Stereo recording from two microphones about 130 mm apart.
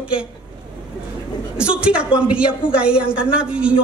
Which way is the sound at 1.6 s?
5° right (ahead or behind).